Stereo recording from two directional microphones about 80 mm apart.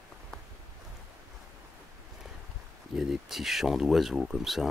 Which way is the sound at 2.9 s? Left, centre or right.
Centre.